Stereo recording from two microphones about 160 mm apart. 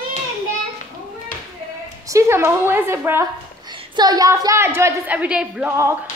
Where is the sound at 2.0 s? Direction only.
20° right (ahead or behind).